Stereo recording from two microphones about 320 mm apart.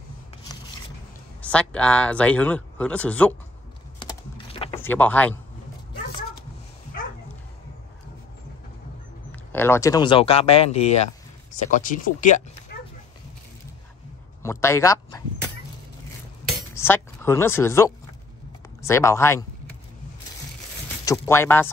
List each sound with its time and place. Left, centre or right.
1.4 s speech: centre
4.0 s typing: centre
4.8 s speech: centre
9.3 s speech: centre; by 12.4 s left
14.4 s speech: centre
16.7 s speech: centre
21.0 s speech: centre